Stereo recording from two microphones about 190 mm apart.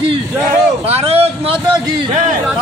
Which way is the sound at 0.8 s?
30° right (ahead or behind).